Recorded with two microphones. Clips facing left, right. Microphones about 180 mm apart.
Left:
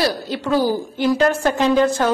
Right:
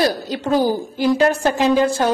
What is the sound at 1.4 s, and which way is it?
Speech, 10° right (ahead or behind).